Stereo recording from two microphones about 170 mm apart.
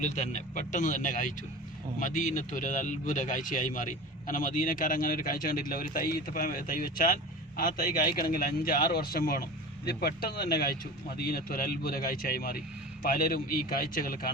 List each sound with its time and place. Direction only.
0.0 s a man's voice: 45° left (ahead or behind)